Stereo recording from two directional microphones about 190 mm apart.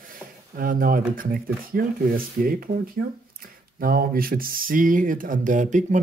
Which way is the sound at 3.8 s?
50° right (ahead or behind).